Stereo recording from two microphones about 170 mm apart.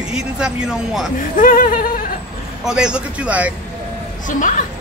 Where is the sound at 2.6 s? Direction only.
5° right (ahead or behind).